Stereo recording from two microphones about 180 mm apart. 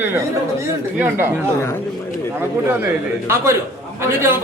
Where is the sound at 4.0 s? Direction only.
15° right (ahead or behind).